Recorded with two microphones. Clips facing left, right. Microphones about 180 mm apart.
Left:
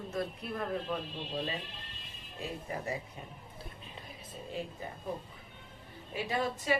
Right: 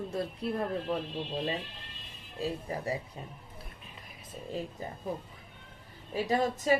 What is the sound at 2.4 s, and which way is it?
Speech, 30° right (ahead or behind).